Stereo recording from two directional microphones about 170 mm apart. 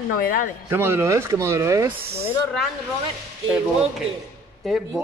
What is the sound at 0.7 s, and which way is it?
A woman's voice, 15° right (ahead or behind).